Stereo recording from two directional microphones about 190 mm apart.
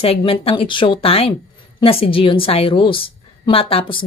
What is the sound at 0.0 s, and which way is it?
A woman's voice, 30° left (ahead or behind).